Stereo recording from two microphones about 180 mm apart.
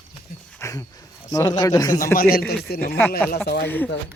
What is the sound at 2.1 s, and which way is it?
Speech, 55° left (ahead or behind).